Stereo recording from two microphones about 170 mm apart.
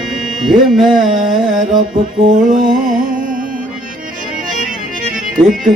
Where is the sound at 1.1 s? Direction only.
50° right (ahead or behind).